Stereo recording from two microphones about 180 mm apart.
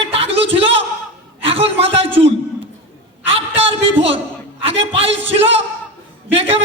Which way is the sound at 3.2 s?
35° right (ahead or behind).